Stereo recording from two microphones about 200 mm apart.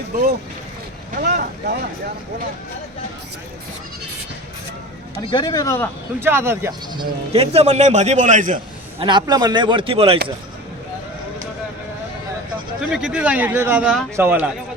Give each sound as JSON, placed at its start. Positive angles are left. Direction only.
{"t": 1.1, "sound": "speech", "side_deg": -45}
{"t": 5.3, "sound": "speech", "side_deg": 20}
{"t": 6.1, "sound": "speech", "side_deg": -10}
{"t": 9.0, "sound": "speech", "side_deg": -25}
{"t": 12.8, "sound": "a man's voice", "side_deg": -5}